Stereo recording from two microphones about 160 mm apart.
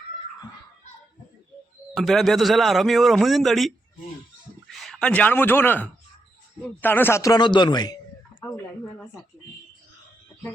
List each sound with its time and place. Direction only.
2.0 s a man's voice: centre (ahead or behind)
4.7 s speech: centre (ahead or behind); by 7.9 s 25° left (ahead or behind)
8.4 s a sound: 20° left (ahead or behind)